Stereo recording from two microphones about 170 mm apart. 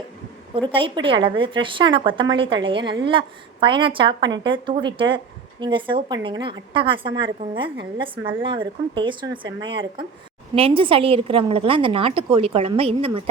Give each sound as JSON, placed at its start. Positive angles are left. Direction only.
{"t": 0.7, "sound": "a woman's voice", "side_deg": -30}